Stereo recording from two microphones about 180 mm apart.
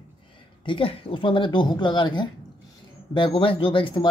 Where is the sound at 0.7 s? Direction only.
30° left (ahead or behind).